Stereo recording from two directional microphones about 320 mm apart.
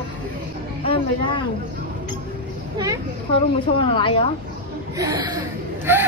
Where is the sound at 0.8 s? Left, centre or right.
Centre.